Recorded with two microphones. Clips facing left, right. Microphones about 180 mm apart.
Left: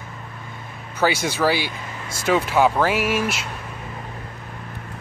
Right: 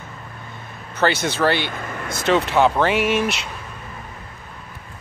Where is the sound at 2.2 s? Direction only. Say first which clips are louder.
Right 1 dB; 5° left (ahead or behind).